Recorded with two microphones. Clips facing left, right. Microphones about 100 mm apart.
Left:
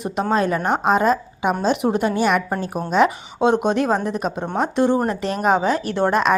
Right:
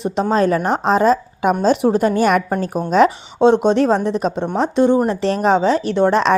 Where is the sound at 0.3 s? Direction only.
35° right (ahead or behind).